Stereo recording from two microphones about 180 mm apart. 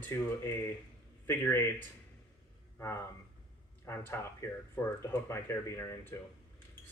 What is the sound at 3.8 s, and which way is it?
Speech, 15° left (ahead or behind).